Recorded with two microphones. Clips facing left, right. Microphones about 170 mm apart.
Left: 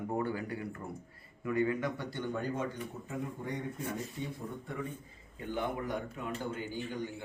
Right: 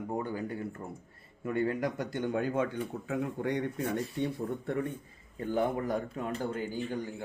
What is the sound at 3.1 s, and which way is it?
Speech, 75° right (ahead or behind).